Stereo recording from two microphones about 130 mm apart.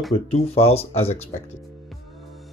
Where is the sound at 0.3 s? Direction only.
50° left (ahead or behind).